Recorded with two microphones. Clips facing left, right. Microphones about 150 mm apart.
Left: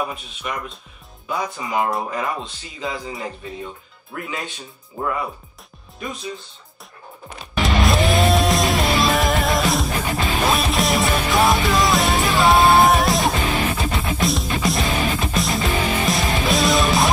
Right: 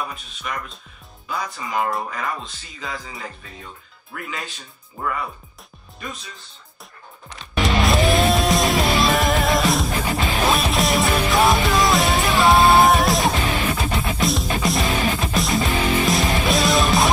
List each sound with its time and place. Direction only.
0.0 s speech: 5° left (ahead or behind)
7.5 s music: centre (ahead or behind)